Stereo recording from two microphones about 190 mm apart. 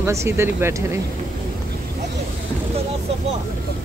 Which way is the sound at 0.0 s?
15° right (ahead or behind).